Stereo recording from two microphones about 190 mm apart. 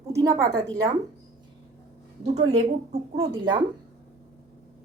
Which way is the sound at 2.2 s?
35° right (ahead or behind).